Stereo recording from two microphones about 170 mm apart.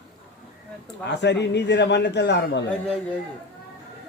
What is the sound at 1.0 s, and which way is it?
A man's voice, 90° left.